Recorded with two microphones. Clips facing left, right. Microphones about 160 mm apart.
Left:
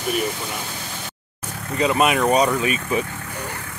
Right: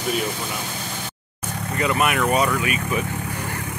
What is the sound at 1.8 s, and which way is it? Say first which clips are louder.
Speech: left 3 dB; 25° left (ahead or behind).